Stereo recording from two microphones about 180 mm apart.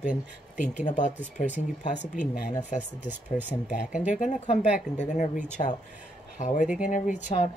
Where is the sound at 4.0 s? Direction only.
45° left (ahead or behind).